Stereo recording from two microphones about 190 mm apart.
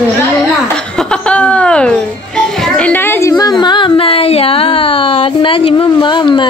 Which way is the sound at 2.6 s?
5° left (ahead or behind).